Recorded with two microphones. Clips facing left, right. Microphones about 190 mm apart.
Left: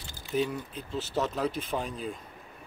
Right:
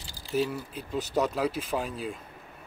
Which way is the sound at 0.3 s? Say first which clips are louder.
Right 1 dB; 5° right (ahead or behind).